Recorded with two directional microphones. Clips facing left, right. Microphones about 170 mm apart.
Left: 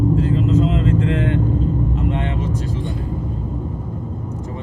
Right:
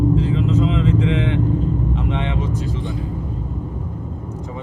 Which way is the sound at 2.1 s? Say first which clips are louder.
Left 1 dB; 45° left (ahead or behind).